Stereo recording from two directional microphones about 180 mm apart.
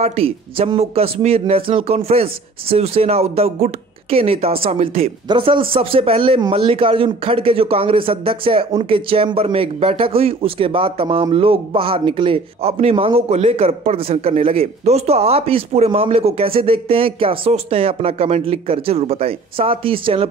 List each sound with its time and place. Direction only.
0.0 s speech: 35° right (ahead or behind)